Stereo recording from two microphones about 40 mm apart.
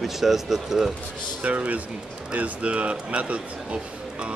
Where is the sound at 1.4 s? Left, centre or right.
Right.